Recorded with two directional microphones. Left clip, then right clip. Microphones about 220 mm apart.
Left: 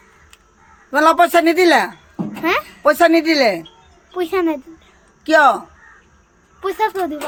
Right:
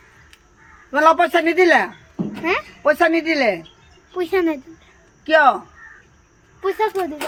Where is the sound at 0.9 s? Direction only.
45° left (ahead or behind).